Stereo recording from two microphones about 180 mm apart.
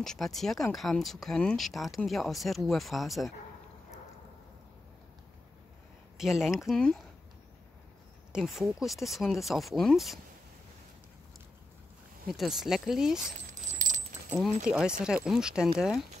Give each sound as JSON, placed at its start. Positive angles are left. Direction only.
{"t": 0.0, "sound": "speech", "side_deg": 0}
{"t": 6.1, "sound": "speech", "side_deg": -5}
{"t": 8.3, "sound": "speech", "side_deg": 0}
{"t": 12.3, "sound": "speech", "side_deg": 0}
{"t": 13.5, "sound": "coin", "side_deg": -45}
{"t": 14.7, "sound": "speech", "side_deg": -5}